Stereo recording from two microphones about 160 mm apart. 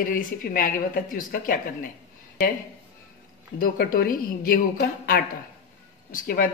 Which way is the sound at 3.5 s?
65° left (ahead or behind).